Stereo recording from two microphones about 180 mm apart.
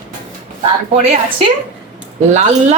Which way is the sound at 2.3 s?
40° right (ahead or behind).